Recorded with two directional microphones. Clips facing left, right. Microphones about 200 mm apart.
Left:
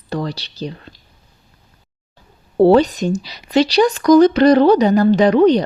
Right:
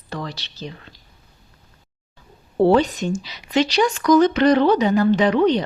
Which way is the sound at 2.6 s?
35° left (ahead or behind).